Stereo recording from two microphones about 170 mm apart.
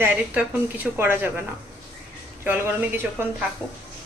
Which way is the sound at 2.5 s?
10° right (ahead or behind).